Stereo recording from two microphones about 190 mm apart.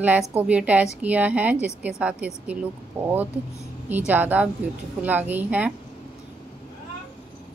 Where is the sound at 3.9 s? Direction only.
10° right (ahead or behind).